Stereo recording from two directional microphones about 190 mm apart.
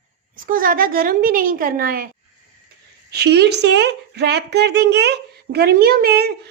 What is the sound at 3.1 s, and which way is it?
Speech, 60° right (ahead or behind).